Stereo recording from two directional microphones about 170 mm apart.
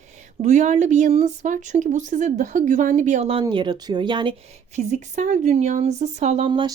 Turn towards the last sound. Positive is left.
turn(degrees=-25)  # may be behind; listen again after turning